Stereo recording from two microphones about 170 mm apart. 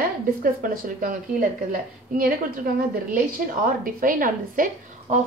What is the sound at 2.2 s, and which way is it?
A woman's voice, 55° right (ahead or behind).